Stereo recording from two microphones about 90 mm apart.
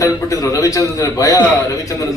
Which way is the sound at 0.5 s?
40° left (ahead or behind).